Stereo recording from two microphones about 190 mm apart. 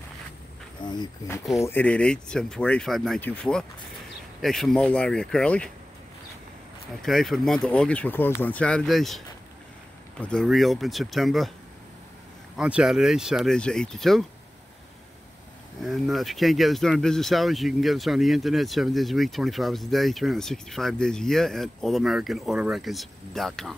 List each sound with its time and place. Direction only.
0.8 s speech: 20° left (ahead or behind)
7.0 s speech: centre (ahead or behind)
12.5 s speech: 5° right (ahead or behind)
15.8 s speech: centre (ahead or behind)